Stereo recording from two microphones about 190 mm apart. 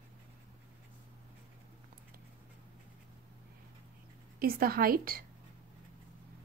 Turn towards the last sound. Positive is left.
turn(degrees=-50)  # may be behind; listen again after turning